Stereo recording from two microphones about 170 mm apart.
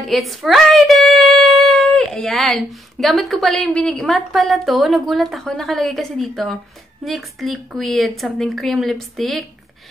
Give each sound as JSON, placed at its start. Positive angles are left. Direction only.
{"t": 0.0, "sound": "speech", "side_deg": 0}